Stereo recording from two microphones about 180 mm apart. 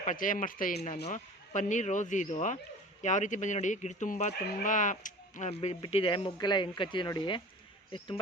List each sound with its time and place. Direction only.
0.0 s speech: 45° left (ahead or behind)
1.0 s speech: 45° left (ahead or behind)